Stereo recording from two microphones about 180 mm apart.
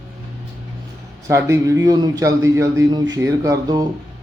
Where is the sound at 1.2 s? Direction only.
15° right (ahead or behind).